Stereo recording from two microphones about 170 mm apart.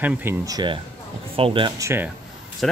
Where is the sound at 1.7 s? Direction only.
15° right (ahead or behind).